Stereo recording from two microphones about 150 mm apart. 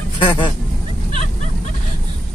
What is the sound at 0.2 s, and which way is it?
Speech, 30° left (ahead or behind).